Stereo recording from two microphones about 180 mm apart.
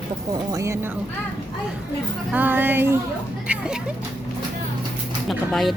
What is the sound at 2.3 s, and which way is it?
A woman's voice, 10° right (ahead or behind).